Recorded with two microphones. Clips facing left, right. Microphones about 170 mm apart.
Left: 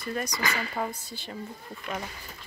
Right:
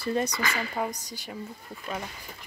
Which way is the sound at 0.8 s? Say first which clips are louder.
Right 2 dB; 10° right (ahead or behind).